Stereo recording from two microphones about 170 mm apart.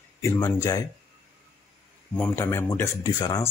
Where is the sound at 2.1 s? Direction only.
10° left (ahead or behind).